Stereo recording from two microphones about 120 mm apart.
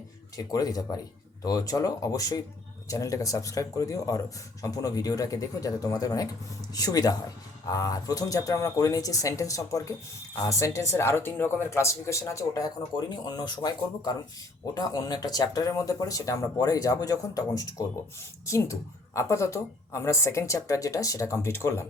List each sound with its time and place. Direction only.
0.5 s a woman's voice: 30° left (ahead or behind)